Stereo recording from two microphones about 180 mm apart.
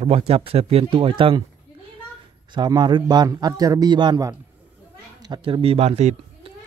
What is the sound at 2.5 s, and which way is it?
A man's voice, 25° right (ahead or behind).